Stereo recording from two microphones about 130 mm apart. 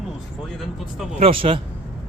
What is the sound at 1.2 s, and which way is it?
Speech, 45° right (ahead or behind).